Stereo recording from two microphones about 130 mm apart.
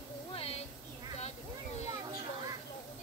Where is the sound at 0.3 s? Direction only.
50° left (ahead or behind).